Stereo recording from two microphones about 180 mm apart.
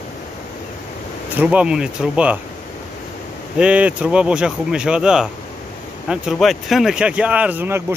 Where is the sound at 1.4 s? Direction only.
5° right (ahead or behind).